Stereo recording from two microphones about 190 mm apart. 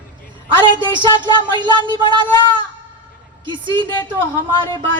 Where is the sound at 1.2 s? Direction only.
25° right (ahead or behind).